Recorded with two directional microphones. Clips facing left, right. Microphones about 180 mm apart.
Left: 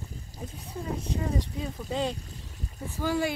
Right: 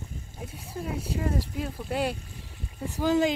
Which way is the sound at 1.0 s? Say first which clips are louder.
Right 2 dB; 5° right (ahead or behind).